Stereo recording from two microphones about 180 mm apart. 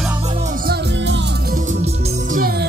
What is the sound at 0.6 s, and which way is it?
Music, 60° right (ahead or behind).